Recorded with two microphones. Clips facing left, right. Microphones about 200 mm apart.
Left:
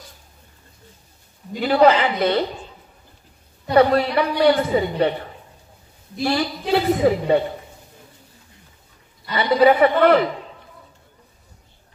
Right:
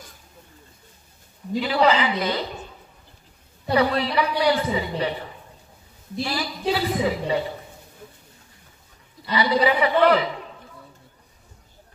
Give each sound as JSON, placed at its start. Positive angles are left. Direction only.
{"t": 1.6, "sound": "a woman's voice", "side_deg": 50}
{"t": 3.7, "sound": "a woman's voice", "side_deg": 50}
{"t": 6.2, "sound": "a woman's voice", "side_deg": 50}
{"t": 9.3, "sound": "a woman's voice", "side_deg": 50}